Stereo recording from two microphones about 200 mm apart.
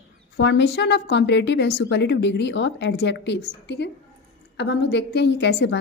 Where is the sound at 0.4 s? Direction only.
60° left (ahead or behind).